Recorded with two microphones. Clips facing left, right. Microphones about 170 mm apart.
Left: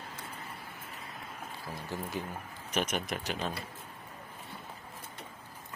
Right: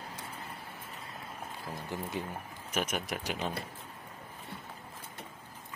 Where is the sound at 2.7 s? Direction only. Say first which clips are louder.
Left 1 dB; 5° right (ahead or behind).